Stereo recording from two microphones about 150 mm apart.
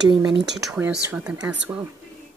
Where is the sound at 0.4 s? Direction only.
5° right (ahead or behind); by 1.8 s 20° right (ahead or behind).